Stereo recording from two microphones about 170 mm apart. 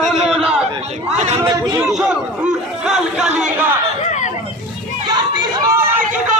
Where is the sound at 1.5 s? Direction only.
20° right (ahead or behind).